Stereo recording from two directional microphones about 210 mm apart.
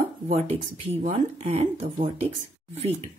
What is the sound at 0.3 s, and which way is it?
Speech, 30° right (ahead or behind).